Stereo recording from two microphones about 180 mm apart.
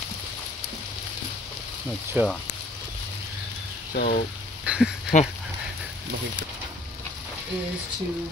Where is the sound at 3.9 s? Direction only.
55° left (ahead or behind).